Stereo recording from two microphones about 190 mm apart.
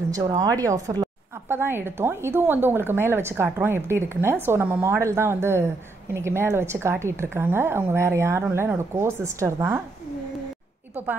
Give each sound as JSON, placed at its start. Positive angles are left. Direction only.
{"t": 0.1, "sound": "a woman's voice", "side_deg": -20}